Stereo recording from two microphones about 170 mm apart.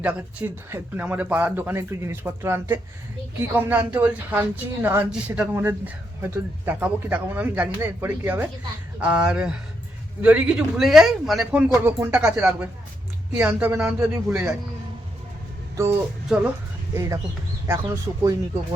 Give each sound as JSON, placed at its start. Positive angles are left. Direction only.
{"t": 0.0, "sound": "speech", "side_deg": -10}
{"t": 15.7, "sound": "music", "side_deg": -15}
{"t": 16.9, "sound": "speech", "side_deg": -20}